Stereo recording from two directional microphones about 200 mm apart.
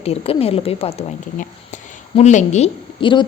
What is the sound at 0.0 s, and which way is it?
A woman's voice, 30° left (ahead or behind).